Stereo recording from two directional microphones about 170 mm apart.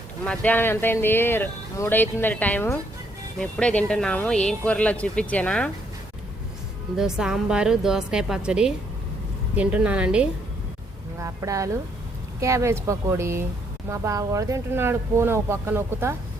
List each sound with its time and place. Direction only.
0.3 s speech: 10° left (ahead or behind)
6.9 s a woman's voice: 5° right (ahead or behind)
11.2 s speech: 20° right (ahead or behind)